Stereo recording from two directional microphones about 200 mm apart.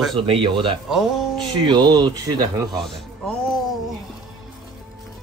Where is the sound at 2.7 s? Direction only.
Centre (ahead or behind).